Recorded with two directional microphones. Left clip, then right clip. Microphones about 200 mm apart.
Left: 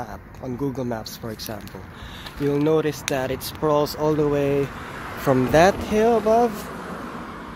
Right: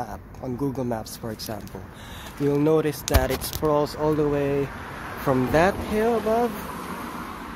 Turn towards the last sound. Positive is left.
turn(degrees=10)  # may be behind; listen again after turning